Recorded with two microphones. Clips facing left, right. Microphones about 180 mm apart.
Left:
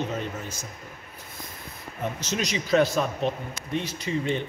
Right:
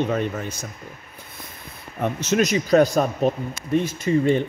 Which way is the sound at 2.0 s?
55° right (ahead or behind).